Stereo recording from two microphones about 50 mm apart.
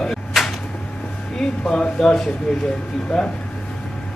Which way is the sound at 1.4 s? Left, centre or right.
Centre.